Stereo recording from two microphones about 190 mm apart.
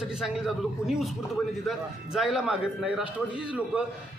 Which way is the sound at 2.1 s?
Centre (ahead or behind).